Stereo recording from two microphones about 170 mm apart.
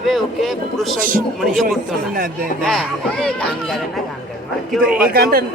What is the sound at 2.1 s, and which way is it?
Speech, 55° right (ahead or behind).